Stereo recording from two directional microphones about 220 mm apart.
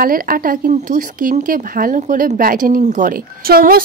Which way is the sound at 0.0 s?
40° right (ahead or behind).